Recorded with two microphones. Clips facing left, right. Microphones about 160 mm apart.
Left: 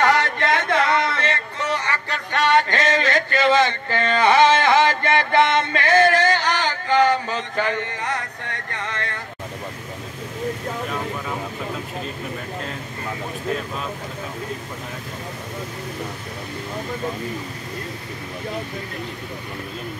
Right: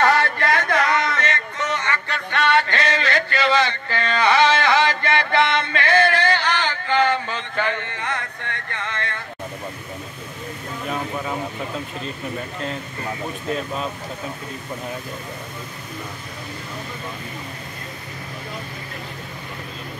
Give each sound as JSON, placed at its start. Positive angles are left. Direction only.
{"t": 0.0, "sound": "music", "side_deg": 15}